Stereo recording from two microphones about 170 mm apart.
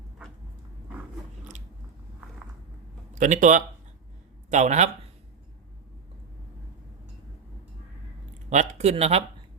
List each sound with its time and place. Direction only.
3.1 s speech: 45° right (ahead or behind)
8.4 s speech: 40° right (ahead or behind)